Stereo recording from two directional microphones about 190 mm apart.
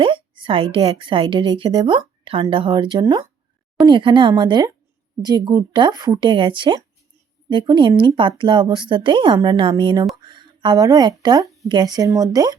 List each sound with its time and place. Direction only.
0.0 s a woman's voice: 25° right (ahead or behind)